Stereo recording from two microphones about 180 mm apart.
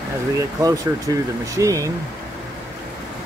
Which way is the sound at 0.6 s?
20° right (ahead or behind).